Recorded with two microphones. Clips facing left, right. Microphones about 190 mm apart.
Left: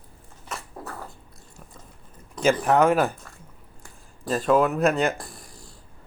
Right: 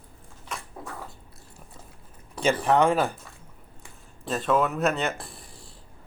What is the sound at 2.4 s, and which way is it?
Speech, 5° left (ahead or behind).